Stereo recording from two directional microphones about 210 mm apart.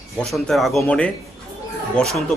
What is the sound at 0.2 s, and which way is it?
A man's voice, centre (ahead or behind).